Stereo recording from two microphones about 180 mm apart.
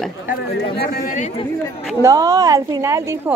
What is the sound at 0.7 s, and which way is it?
Speech, 60° left (ahead or behind).